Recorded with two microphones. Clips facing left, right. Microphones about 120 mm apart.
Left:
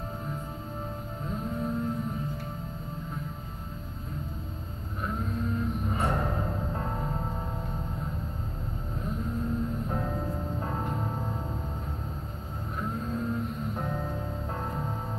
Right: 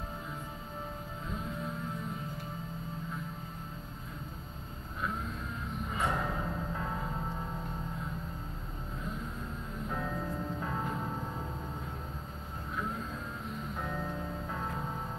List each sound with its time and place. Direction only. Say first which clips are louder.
6.0 s music: left 2 dB; 35° left (ahead or behind)
9.8 s music: left 4 dB; 30° left (ahead or behind)
13.7 s music: left 3 dB; 35° left (ahead or behind)